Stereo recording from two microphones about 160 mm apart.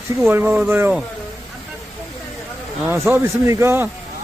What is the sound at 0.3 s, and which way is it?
Speech, 15° right (ahead or behind).